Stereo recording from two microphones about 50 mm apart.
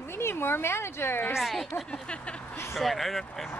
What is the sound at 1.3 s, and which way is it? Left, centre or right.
Speech, centre.